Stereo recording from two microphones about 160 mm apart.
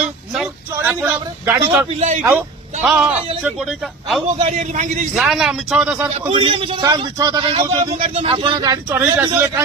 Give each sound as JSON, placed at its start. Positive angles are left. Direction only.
{"t": 0.0, "sound": "a sound", "side_deg": -5}
{"t": 1.9, "sound": "speech", "side_deg": -40}
{"t": 2.8, "sound": "speech", "side_deg": -10}
{"t": 4.4, "sound": "a man's voice", "side_deg": -45}
{"t": 5.1, "sound": "speech", "side_deg": 0}
{"t": 6.2, "sound": "speech", "side_deg": -35}
{"t": 6.8, "sound": "a man's voice", "side_deg": -25}
{"t": 8.9, "sound": "speech", "side_deg": -10}